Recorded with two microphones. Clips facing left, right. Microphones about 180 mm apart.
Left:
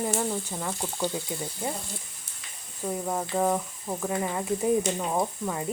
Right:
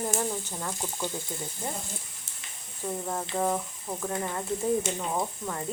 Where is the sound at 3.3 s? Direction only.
Centre (ahead or behind).